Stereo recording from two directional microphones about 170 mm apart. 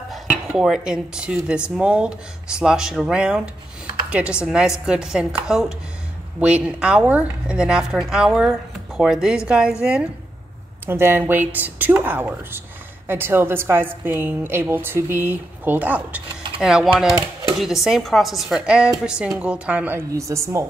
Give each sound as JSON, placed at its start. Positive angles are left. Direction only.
{"t": 0.5, "sound": "a woman's voice", "side_deg": -5}
{"t": 17.1, "sound": "typewriter", "side_deg": -20}
{"t": 17.8, "sound": "speech", "side_deg": 0}